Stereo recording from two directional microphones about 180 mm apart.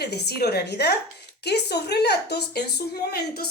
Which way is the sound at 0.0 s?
65° left (ahead or behind).